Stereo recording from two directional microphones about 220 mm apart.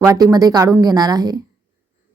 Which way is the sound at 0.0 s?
15° right (ahead or behind).